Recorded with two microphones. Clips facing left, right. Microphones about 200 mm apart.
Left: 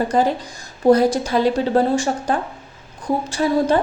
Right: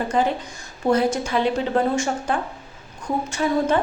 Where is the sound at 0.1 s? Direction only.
40° left (ahead or behind).